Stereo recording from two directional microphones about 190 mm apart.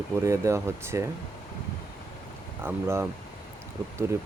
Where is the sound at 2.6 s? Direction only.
15° right (ahead or behind).